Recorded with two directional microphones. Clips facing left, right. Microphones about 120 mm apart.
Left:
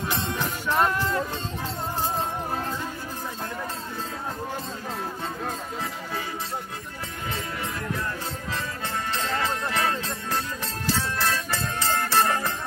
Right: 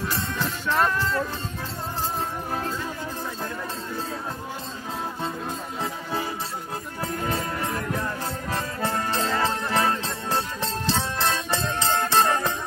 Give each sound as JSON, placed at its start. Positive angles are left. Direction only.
{"t": 0.1, "sound": "music", "side_deg": 15}
{"t": 8.5, "sound": "music", "side_deg": -40}